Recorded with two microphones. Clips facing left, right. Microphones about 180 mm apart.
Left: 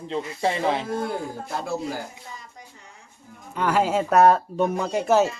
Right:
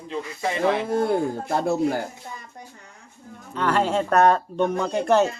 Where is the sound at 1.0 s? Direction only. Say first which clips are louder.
Right 6 dB; 60° right (ahead or behind).